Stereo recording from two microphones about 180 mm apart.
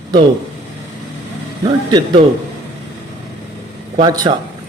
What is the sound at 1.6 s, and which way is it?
Speech, 25° right (ahead or behind).